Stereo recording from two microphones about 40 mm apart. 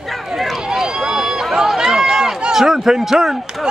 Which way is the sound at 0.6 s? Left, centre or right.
Centre.